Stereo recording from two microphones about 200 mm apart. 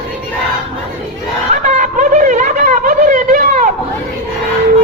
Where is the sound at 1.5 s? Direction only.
35° right (ahead or behind).